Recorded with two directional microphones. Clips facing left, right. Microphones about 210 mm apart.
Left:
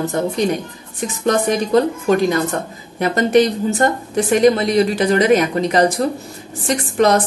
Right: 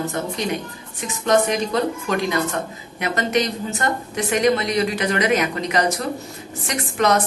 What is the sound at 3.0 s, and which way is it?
A woman's voice, 35° left (ahead or behind).